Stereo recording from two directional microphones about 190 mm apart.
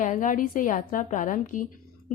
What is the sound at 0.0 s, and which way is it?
A woman's voice, 45° left (ahead or behind).